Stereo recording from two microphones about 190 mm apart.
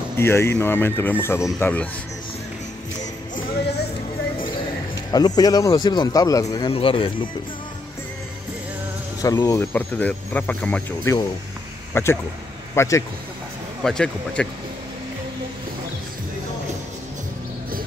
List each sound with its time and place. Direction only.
0.2 s speech: 15° left (ahead or behind)
5.1 s a man's voice: 20° left (ahead or behind)
9.2 s speech: 15° left (ahead or behind)
13.8 s speech: 5° left (ahead or behind)